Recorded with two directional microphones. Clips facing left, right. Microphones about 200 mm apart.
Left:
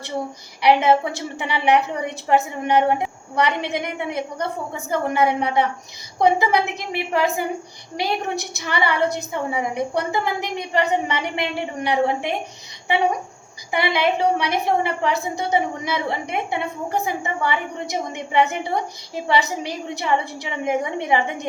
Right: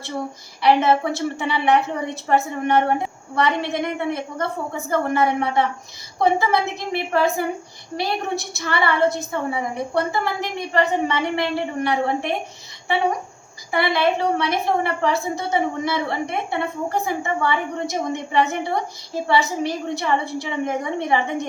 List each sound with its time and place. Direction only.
0.6 s a woman's voice: 15° left (ahead or behind)
13.7 s a woman's voice: 15° left (ahead or behind)